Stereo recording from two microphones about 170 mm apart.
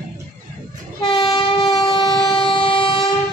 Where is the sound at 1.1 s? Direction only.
25° left (ahead or behind).